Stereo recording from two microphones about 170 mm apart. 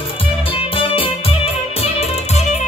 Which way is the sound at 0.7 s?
30° left (ahead or behind).